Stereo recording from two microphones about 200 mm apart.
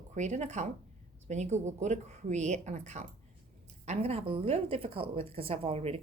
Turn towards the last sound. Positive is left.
turn(degrees=-30)  # may be behind; listen again after turning